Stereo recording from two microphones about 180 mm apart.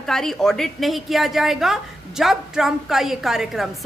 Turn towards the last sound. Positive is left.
turn(degrees=0)  # may be behind; listen again after turning